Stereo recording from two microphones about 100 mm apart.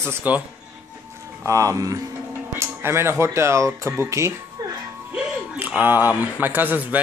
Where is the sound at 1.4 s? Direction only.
35° right (ahead or behind).